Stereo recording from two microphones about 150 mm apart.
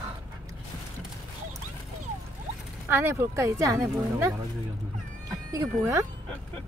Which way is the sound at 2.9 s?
15° right (ahead or behind).